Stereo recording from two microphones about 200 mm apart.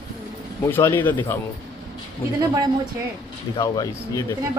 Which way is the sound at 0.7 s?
10° left (ahead or behind).